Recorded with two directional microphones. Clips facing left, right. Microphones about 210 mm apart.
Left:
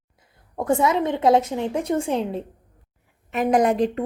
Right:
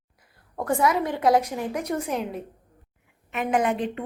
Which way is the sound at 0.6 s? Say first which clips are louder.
Left 3 dB; 25° left (ahead or behind).